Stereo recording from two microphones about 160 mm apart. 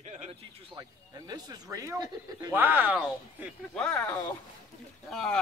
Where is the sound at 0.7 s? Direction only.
25° right (ahead or behind).